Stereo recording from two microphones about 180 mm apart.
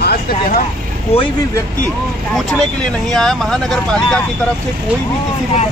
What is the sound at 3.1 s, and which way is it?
Speech, centre (ahead or behind).